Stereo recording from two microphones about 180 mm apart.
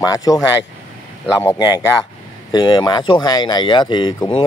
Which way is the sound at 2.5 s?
25° left (ahead or behind).